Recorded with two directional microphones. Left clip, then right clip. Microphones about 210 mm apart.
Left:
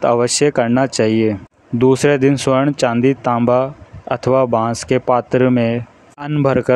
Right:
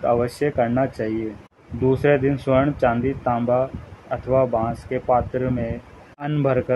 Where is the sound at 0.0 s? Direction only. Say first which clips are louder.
Left 7 dB; 50° left (ahead or behind).